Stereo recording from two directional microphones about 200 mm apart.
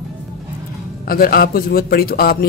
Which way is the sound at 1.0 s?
45° left (ahead or behind).